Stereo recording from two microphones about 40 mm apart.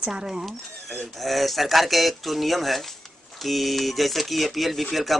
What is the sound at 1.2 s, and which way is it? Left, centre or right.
Speech, centre.